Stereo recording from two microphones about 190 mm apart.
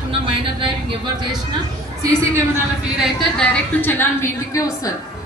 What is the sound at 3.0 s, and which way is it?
A woman's voice, centre (ahead or behind).